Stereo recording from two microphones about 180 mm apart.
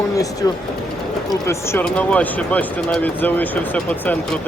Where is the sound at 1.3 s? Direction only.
15° left (ahead or behind).